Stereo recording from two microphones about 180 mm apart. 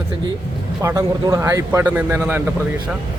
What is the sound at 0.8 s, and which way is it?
Speech, 15° right (ahead or behind).